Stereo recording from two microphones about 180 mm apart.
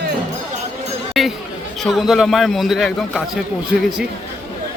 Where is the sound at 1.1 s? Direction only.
Centre (ahead or behind).